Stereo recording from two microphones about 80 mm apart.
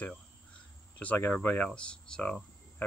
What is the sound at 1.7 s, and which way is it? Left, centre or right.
Speech, centre.